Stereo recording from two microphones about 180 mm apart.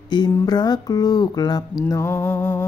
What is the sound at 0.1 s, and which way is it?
Mantra, 25° left (ahead or behind).